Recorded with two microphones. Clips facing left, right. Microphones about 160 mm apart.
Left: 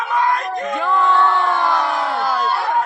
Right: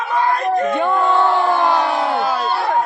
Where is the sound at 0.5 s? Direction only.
30° right (ahead or behind); by 2.5 s 5° right (ahead or behind).